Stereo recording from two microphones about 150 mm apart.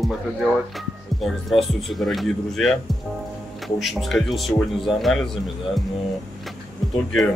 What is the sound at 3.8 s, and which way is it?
Speech, centre (ahead or behind).